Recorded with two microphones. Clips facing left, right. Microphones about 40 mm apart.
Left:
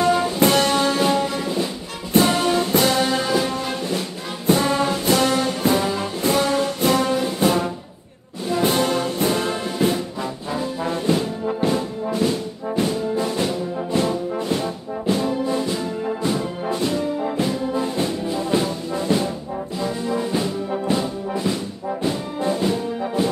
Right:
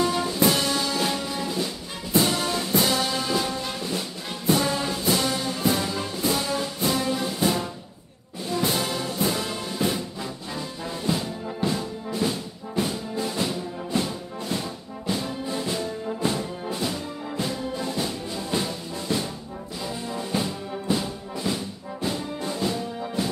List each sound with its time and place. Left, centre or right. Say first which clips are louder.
0.0 s music: left 6 dB; left
0.4 s music: left 3 dB; left
1.4 s music: left 4 dB; left
2.1 s music: left 6 dB; left
4.9 s music: left 6 dB; left
5.8 s music: left 5 dB; left
7.2 s music: left 5 dB; left
10.9 s brass instrument: left 6 dB; left
12.7 s music: left 6 dB; left
17.4 s brass instrument: left 3 dB; centre
17.8 s brass instrument: left 6 dB; left
20.2 s brass instrument: left 4 dB; centre
20.9 s music: left 2 dB; centre
22.0 s music: left 5 dB; left